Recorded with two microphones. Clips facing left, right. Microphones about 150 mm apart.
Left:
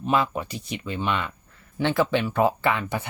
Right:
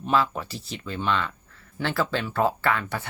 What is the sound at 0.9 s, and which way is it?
Speech, 10° left (ahead or behind).